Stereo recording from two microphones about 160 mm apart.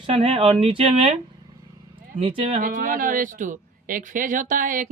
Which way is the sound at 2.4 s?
50° right (ahead or behind).